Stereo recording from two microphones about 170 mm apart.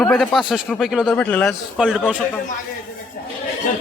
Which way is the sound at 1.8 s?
5° right (ahead or behind).